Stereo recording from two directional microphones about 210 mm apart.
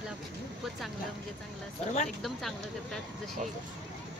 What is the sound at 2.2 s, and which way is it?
Speech, centre (ahead or behind).